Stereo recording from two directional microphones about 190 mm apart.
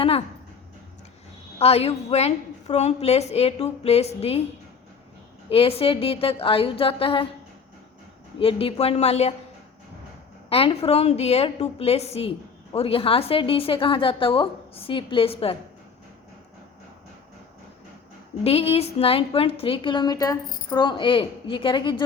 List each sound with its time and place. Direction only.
1.5 s a woman's voice: 30° left (ahead or behind)
5.5 s a woman's voice: 30° left (ahead or behind)
8.4 s a woman's voice: 30° left (ahead or behind)
10.5 s a woman's voice: 30° left (ahead or behind)
18.4 s a woman's voice: 30° left (ahead or behind)